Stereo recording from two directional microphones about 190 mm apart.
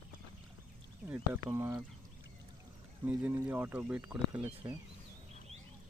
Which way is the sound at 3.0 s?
10° right (ahead or behind).